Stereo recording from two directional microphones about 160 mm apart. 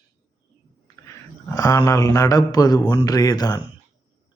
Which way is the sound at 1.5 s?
20° left (ahead or behind).